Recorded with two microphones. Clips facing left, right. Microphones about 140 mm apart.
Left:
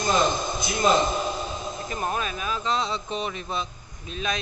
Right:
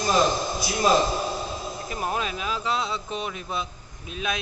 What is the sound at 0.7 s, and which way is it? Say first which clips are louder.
Speech: even; 5° right (ahead or behind).